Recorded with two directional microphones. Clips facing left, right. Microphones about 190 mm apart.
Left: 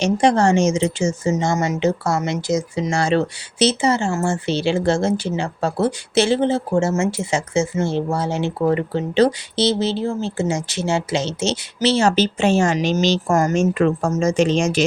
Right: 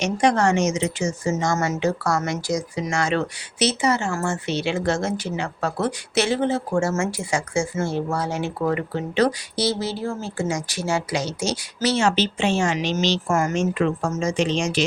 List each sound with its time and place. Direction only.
0.0 s speech: 30° left (ahead or behind)
12.0 s a woman's voice: 40° left (ahead or behind)